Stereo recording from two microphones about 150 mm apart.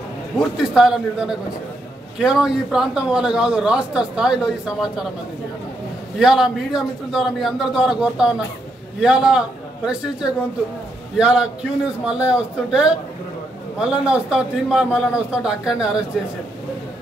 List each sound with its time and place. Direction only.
0.4 s a man's voice: 5° right (ahead or behind)
6.1 s a man's voice: 5° right (ahead or behind)
11.1 s a man's voice: 5° right (ahead or behind)